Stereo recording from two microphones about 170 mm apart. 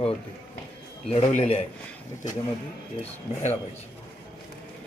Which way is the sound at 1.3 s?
35° left (ahead or behind).